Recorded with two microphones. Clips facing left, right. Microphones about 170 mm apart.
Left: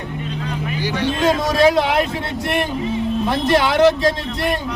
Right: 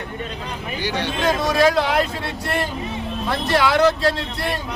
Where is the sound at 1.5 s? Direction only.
20° left (ahead or behind).